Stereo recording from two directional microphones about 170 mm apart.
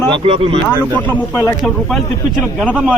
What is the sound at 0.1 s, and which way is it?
Speech, 35° right (ahead or behind).